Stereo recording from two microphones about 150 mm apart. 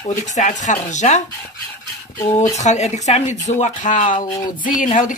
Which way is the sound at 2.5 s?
50° left (ahead or behind).